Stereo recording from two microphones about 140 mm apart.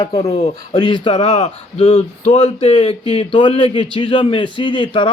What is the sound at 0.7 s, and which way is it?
Speech, 35° left (ahead or behind).